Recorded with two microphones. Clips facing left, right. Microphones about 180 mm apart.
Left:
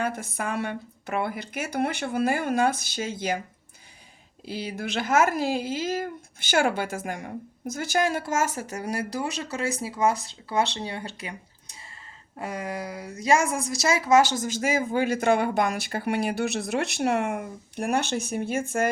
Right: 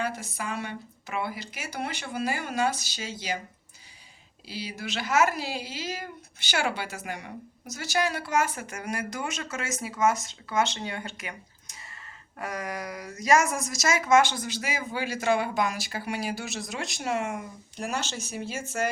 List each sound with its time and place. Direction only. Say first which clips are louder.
0.0 s a woman's voice: left 3 dB; 55° left (ahead or behind)
4.4 s a woman's voice: left 4 dB; 50° left (ahead or behind)